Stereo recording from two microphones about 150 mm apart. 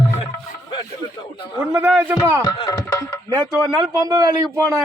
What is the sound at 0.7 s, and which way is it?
Music, 30° left (ahead or behind).